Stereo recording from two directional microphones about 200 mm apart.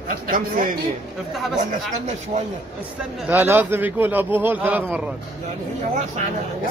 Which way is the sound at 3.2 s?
10° right (ahead or behind).